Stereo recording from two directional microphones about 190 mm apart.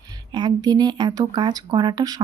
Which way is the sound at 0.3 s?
20° right (ahead or behind).